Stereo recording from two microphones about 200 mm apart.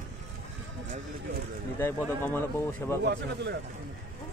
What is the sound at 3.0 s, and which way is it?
Speech, 60° right (ahead or behind).